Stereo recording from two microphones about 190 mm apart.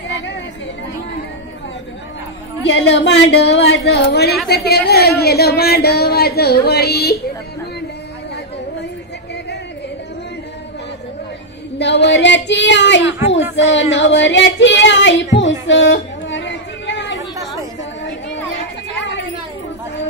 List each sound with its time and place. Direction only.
2.6 s a woman's voice: 65° left (ahead or behind)
11.8 s child singing: 65° left (ahead or behind)
15.3 s chatter: 75° left (ahead or behind)